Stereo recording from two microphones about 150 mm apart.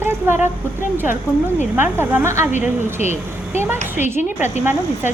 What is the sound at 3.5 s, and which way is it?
A woman's voice, 15° right (ahead or behind).